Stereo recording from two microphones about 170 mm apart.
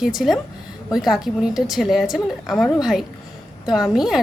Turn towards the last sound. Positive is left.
turn(degrees=-5)  # may be behind; listen again after turning